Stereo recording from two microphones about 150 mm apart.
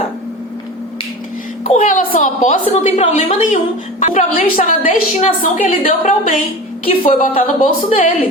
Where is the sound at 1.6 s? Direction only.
50° left (ahead or behind).